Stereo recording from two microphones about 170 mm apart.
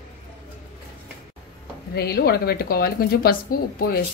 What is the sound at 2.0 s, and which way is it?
A woman's voice, 65° left (ahead or behind).